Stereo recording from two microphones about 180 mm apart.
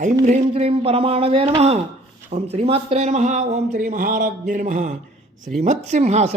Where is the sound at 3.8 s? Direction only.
50° right (ahead or behind).